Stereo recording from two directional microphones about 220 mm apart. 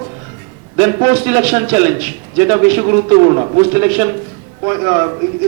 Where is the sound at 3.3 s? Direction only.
25° right (ahead or behind).